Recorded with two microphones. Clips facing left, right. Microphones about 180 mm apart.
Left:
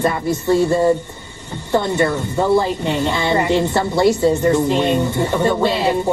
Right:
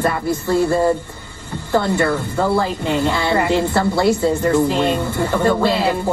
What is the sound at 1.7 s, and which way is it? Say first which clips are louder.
Speech: even; 20° left (ahead or behind).